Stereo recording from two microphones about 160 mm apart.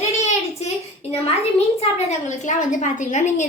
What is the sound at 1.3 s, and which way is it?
A woman's voice, 40° left (ahead or behind).